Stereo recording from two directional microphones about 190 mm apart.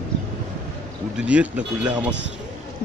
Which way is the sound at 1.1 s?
5° right (ahead or behind).